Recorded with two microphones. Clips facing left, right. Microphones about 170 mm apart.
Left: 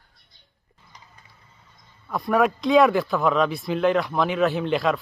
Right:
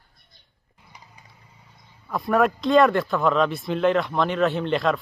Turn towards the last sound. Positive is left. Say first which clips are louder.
# even
turn(degrees=0)  # may be behind; listen again after turning